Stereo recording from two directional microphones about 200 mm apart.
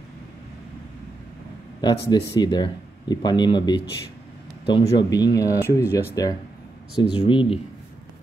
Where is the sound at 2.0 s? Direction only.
20° left (ahead or behind).